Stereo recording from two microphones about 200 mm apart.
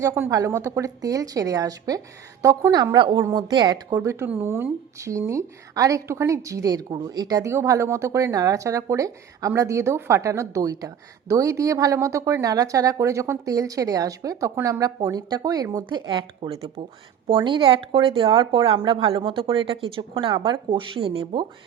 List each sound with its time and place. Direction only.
0.0 s a woman's voice: 15° right (ahead or behind)